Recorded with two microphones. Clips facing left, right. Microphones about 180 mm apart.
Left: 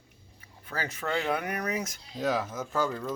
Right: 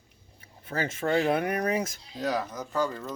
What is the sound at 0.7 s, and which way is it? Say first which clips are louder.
Speech: right 5 dB; 25° right (ahead or behind).